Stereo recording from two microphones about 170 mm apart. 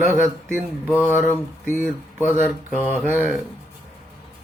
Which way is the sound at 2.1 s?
10° right (ahead or behind).